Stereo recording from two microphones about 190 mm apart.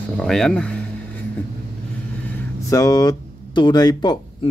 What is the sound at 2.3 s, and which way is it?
Speech, 15° left (ahead or behind).